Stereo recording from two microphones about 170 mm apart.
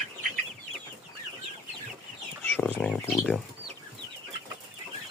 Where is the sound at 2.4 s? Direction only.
10° left (ahead or behind).